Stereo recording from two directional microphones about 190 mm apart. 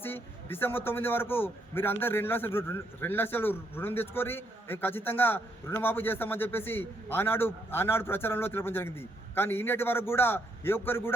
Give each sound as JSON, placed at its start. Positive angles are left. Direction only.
{"t": 0.0, "sound": "a man's voice", "side_deg": 10}